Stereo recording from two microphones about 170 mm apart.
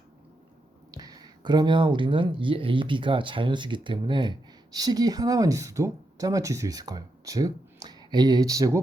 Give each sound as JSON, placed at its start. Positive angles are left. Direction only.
{"t": 0.9, "sound": "speech", "side_deg": -25}